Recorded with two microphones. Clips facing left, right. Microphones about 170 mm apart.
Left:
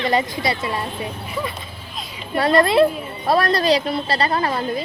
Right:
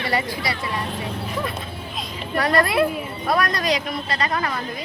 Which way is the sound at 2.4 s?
25° left (ahead or behind).